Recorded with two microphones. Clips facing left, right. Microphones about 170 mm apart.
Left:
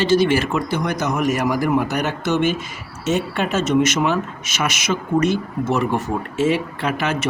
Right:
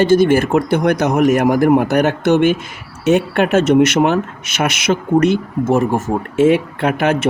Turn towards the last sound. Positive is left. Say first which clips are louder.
# right 6 dB
turn(degrees=-55)  # may be behind; listen again after turning